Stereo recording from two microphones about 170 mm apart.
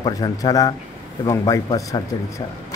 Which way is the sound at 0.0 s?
20° left (ahead or behind).